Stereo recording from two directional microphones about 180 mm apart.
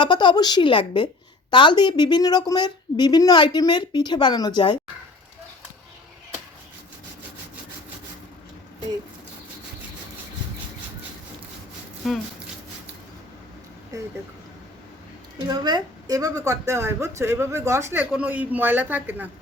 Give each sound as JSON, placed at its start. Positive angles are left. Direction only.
{"t": 0.0, "sound": "speech", "side_deg": 25}
{"t": 12.0, "sound": "speech", "side_deg": 0}
{"t": 13.9, "sound": "a woman's voice", "side_deg": -20}
{"t": 15.4, "sound": "a woman's voice", "side_deg": -25}